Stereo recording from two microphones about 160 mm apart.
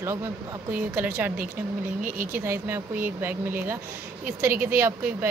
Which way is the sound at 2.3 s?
15° right (ahead or behind).